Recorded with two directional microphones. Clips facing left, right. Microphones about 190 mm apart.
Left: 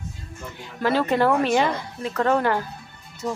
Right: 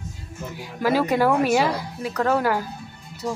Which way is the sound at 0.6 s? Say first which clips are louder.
Right 1 dB; 10° right (ahead or behind).